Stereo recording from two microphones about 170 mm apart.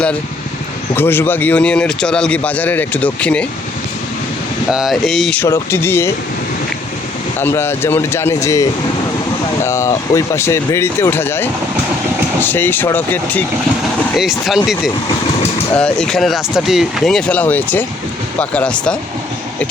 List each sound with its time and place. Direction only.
0.9 s a man's voice: 15° left (ahead or behind)
4.7 s speech: centre (ahead or behind)
5.4 s a man's voice: 15° left (ahead or behind)
7.3 s a man's voice: 15° left (ahead or behind)
9.6 s a man's voice: 15° left (ahead or behind)
14.0 s speech: centre (ahead or behind)
15.7 s a man's voice: 5° left (ahead or behind)